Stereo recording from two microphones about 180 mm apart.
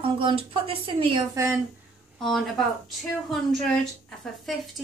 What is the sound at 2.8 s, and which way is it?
A woman's voice, centre (ahead or behind).